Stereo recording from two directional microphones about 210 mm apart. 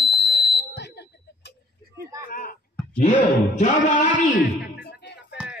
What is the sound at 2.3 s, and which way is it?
Speech, 40° left (ahead or behind).